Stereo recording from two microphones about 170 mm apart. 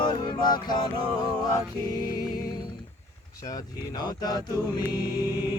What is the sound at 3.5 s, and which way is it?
Music, 25° left (ahead or behind).